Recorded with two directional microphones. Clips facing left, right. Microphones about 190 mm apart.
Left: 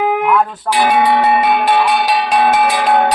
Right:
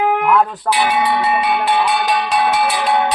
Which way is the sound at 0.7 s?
45° left (ahead or behind).